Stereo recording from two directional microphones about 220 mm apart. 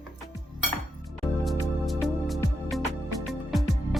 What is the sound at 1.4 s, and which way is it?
Music, centre (ahead or behind).